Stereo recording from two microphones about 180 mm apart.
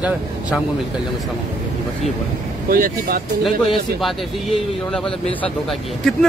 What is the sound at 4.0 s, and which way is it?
Speech, centre (ahead or behind).